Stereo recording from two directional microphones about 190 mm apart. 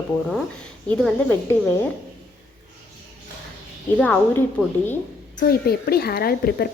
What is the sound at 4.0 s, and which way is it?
A woman's voice, 5° left (ahead or behind).